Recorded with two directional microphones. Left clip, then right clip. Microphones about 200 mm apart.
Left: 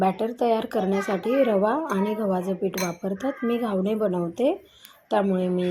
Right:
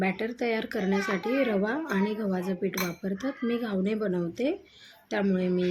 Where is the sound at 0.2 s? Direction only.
Centre (ahead or behind).